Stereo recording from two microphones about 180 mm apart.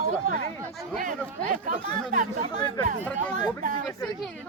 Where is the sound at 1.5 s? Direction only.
45° right (ahead or behind).